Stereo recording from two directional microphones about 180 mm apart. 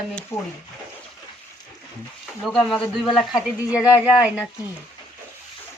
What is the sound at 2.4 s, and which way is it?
A man's voice, centre (ahead or behind).